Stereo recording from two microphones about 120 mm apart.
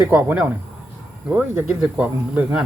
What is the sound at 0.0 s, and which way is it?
Speech, 15° right (ahead or behind).